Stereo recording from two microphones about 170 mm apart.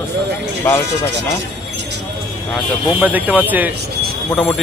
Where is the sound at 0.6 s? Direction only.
10° left (ahead or behind).